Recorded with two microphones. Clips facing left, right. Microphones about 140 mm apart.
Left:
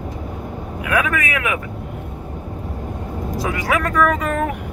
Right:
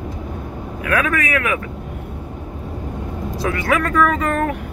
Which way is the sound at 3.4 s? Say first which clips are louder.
Right 2 dB; 10° left (ahead or behind).